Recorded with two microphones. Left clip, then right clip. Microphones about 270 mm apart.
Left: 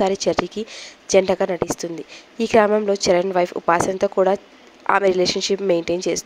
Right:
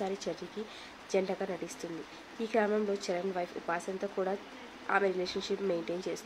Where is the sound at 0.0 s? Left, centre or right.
Left.